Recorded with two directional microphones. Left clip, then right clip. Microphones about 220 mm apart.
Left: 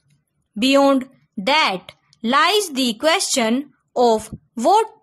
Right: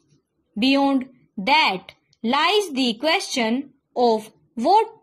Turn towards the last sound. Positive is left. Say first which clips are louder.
# left 2 dB
turn(degrees=20)  # may be behind; listen again after turning